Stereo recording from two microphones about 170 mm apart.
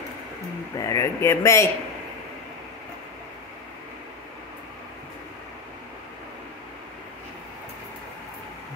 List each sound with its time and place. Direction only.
0.7 s speech: 20° left (ahead or behind)